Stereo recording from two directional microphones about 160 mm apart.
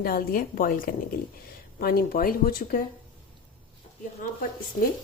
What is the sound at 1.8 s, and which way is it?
Speech, 70° left (ahead or behind).